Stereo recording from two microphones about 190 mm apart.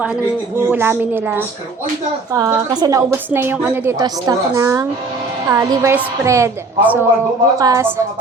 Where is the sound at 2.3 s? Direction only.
20° right (ahead or behind).